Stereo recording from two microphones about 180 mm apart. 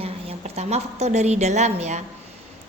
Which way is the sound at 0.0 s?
35° right (ahead or behind).